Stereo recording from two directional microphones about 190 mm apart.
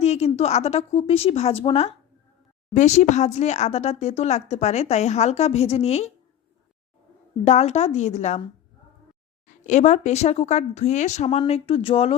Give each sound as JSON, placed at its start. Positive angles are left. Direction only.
{"t": 0.0, "sound": "speech", "side_deg": 35}
{"t": 7.4, "sound": "speech", "side_deg": 35}
{"t": 9.5, "sound": "speech", "side_deg": 40}